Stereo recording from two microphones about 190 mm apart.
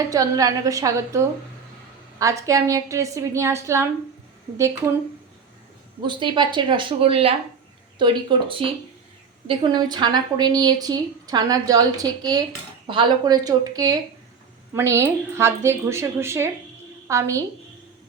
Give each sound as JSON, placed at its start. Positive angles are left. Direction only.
{"t": 0.1, "sound": "a woman's voice", "side_deg": -20}
{"t": 6.1, "sound": "a woman's voice", "side_deg": -25}